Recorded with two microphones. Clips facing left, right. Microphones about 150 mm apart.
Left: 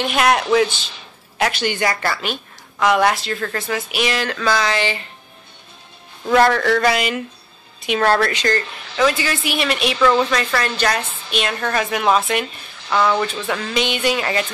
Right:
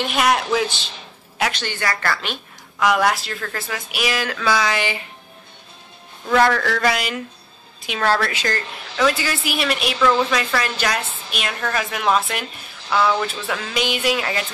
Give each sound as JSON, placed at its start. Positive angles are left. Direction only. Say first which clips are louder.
{"t": 0.0, "sound": "a woman's voice", "louder": "left 2 dB", "side_deg": 0}
{"t": 2.8, "sound": "a woman's voice", "louder": "left 2 dB", "side_deg": 0}
{"t": 6.2, "sound": "a woman's voice", "louder": "left 3 dB", "side_deg": 0}